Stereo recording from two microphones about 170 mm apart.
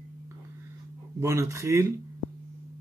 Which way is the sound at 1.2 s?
15° right (ahead or behind).